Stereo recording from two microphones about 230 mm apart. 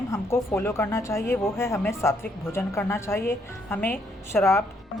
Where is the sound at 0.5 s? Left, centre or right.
Centre.